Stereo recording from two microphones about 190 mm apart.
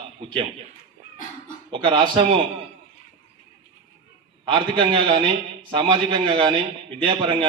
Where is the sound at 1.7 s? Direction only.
25° right (ahead or behind).